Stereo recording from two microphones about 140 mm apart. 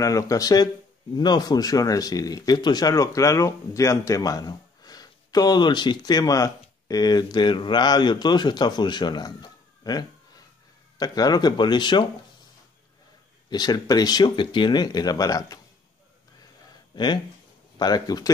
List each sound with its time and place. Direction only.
0.0 s speech: 25° left (ahead or behind)
13.5 s speech: 30° left (ahead or behind)
16.9 s speech: 30° left (ahead or behind)